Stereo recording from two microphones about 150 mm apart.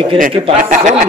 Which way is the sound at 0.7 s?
60° right (ahead or behind).